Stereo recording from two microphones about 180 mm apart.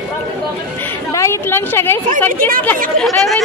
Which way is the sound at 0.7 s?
15° left (ahead or behind).